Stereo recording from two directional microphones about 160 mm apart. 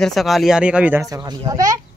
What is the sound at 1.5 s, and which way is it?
Speech, 20° right (ahead or behind).